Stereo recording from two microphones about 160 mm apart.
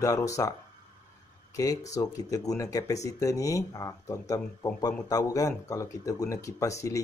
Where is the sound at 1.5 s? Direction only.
20° left (ahead or behind).